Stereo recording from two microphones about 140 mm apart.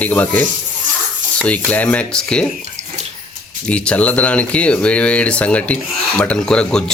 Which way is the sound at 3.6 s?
10° left (ahead or behind).